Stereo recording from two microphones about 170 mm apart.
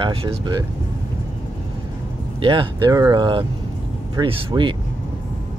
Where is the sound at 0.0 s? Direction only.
35° right (ahead or behind).